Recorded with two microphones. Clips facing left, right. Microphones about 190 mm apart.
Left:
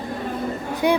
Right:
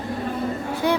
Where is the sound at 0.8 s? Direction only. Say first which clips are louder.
Left 3 dB; 15° left (ahead or behind).